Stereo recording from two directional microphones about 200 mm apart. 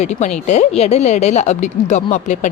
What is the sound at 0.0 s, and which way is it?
A woman's voice, 35° left (ahead or behind).